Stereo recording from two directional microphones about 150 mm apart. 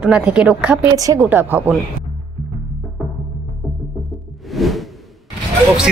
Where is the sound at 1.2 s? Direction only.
15° right (ahead or behind).